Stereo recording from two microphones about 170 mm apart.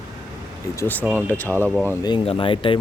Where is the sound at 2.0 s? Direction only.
30° left (ahead or behind).